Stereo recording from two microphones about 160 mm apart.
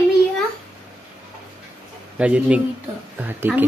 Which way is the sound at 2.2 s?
10° right (ahead or behind).